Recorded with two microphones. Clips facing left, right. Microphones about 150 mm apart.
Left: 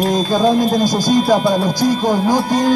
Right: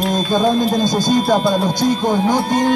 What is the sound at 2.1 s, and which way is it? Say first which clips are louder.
Music: left 1 dB; 25° right (ahead or behind).